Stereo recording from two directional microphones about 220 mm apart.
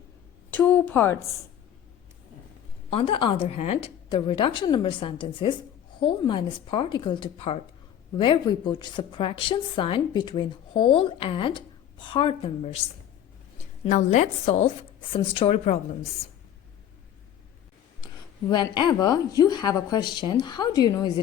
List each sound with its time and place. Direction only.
0.5 s a woman's voice: 5° left (ahead or behind)
2.9 s a woman's voice: 25° left (ahead or behind)
13.8 s a woman's voice: 35° left (ahead or behind)
18.0 s a woman's voice: 20° left (ahead or behind)